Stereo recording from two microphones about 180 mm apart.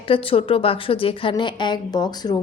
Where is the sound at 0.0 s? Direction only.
30° left (ahead or behind).